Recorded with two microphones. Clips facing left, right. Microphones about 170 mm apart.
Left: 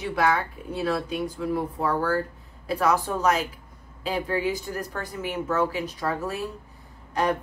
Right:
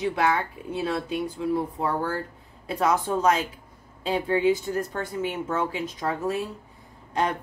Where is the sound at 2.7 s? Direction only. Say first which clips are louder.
Even; 25° right (ahead or behind).